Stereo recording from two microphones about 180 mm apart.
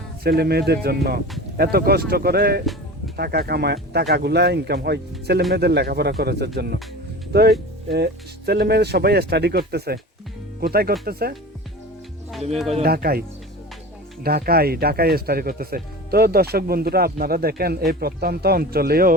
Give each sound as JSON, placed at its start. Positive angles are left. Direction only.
{"t": 0.2, "sound": "speech", "side_deg": -60}
{"t": 12.5, "sound": "speech", "side_deg": 0}
{"t": 12.8, "sound": "speech", "side_deg": -55}
{"t": 14.3, "sound": "speech", "side_deg": -55}